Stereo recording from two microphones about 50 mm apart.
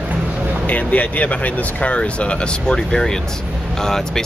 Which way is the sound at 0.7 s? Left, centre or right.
Left.